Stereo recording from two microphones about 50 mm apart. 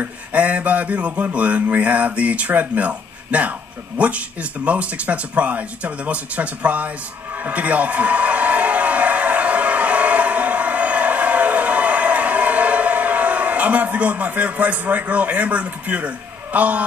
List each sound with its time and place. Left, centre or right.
0.0 s speech: right
7.4 s a sound: right
16.5 s speech: right